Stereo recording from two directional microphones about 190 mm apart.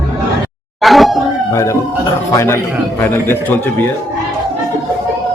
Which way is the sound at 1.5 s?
15° left (ahead or behind).